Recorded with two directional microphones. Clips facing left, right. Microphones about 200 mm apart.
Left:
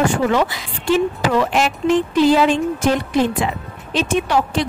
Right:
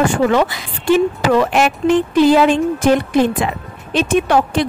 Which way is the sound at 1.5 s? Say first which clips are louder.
Right 3 dB; 55° right (ahead or behind).